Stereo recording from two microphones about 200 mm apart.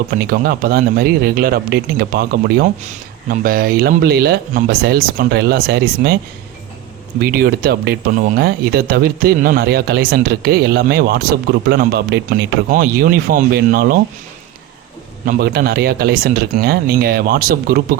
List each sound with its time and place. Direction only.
0.1 s speech: 45° right (ahead or behind)
7.2 s speech: 45° right (ahead or behind)
15.3 s speech: 50° right (ahead or behind)